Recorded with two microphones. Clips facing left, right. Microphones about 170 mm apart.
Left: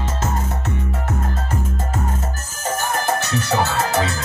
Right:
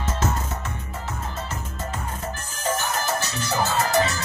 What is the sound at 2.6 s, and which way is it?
Music, 45° left (ahead or behind).